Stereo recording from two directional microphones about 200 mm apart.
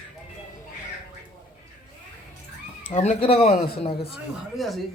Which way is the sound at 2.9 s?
35° left (ahead or behind).